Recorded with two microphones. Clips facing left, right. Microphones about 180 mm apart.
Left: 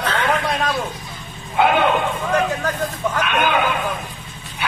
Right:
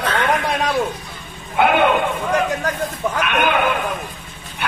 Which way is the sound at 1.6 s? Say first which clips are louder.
Right 1 dB; 60° right (ahead or behind).